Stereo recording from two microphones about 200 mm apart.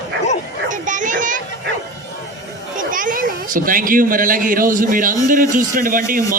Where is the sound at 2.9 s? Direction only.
45° right (ahead or behind).